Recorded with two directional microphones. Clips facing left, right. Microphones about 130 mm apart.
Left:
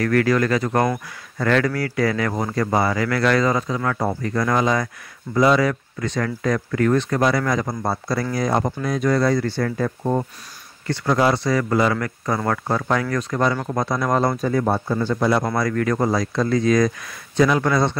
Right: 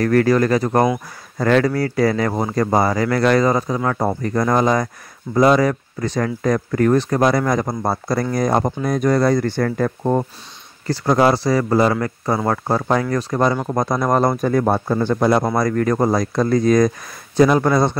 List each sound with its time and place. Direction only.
0.0 s speech: 35° right (ahead or behind)